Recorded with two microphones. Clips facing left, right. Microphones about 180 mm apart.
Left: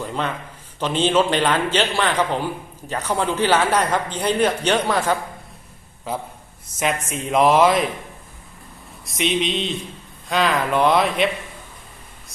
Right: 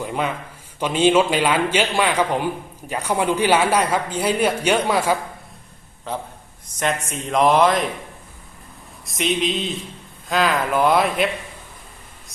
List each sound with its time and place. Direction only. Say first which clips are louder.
0.0 s a sound: right 2 dB; 10° right (ahead or behind)
0.8 s speech: right 2 dB; 10° right (ahead or behind)
6.7 s speech: even; 5° left (ahead or behind)
9.0 s speech: even; centre (ahead or behind)